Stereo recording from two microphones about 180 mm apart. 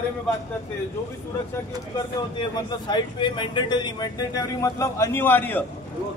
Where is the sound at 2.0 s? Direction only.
20° left (ahead or behind).